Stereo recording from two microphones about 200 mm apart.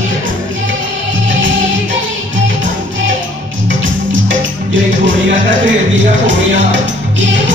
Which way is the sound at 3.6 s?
70° right (ahead or behind).